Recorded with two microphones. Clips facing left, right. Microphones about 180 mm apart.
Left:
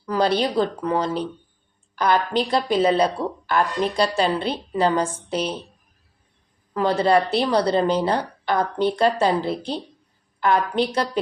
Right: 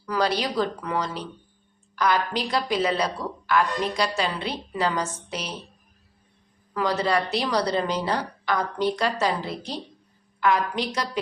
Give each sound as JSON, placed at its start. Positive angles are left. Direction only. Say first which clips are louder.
{"t": 0.0, "sound": "a woman's voice", "louder": "left 4 dB", "side_deg": 25}
{"t": 2.3, "sound": "a woman's voice", "louder": "left 5 dB", "side_deg": 30}
{"t": 6.7, "sound": "a woman's voice", "louder": "left 5 dB", "side_deg": 30}